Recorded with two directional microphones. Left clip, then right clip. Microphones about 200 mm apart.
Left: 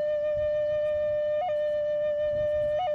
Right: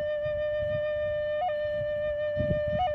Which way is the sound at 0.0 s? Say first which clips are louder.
Left 3 dB; 40° right (ahead or behind).